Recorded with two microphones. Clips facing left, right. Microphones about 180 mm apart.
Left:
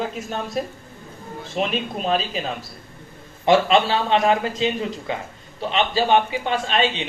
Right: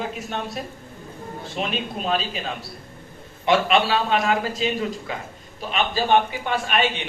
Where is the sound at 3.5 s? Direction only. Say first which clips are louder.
Left 2 dB; 25° left (ahead or behind).